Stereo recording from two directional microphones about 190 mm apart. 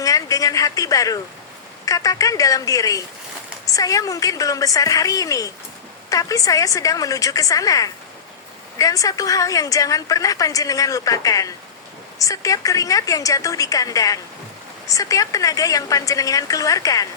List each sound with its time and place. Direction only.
0.0 s a woman's voice: 20° left (ahead or behind)